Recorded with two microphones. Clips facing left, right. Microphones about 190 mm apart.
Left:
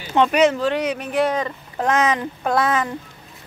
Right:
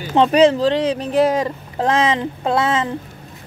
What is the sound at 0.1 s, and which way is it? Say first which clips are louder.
Speech: right 3 dB; 30° right (ahead or behind).